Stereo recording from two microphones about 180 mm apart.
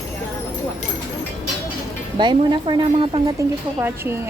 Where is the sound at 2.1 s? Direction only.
25° right (ahead or behind).